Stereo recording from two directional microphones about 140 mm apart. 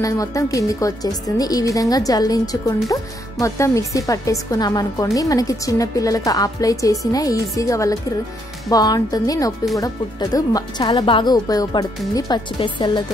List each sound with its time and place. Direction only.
0.0 s a woman's voice: 25° left (ahead or behind)